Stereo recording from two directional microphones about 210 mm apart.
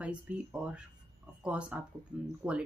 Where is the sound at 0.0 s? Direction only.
5° right (ahead or behind).